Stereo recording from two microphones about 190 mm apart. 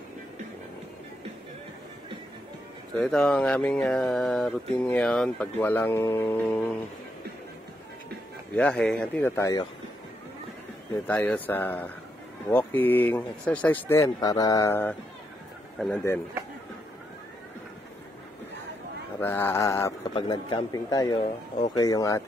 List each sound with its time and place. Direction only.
3.0 s speech: 5° left (ahead or behind)
6.5 s speech: 5° left (ahead or behind)
8.5 s speech: 5° left (ahead or behind)
11.1 s speech: 10° left (ahead or behind)
19.1 s speech: 10° left (ahead or behind)
20.2 s speech: 25° left (ahead or behind)